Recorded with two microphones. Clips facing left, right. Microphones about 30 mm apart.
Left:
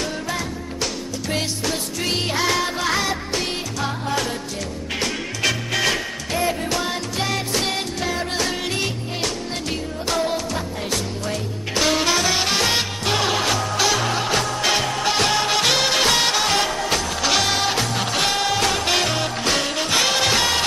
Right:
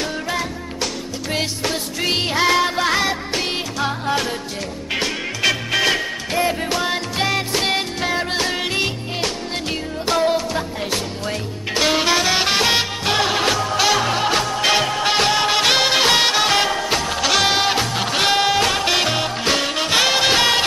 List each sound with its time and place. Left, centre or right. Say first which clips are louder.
1.6 s music: right 2 dB; right